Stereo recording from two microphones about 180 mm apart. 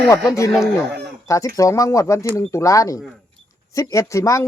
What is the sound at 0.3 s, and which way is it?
Speech, 15° left (ahead or behind).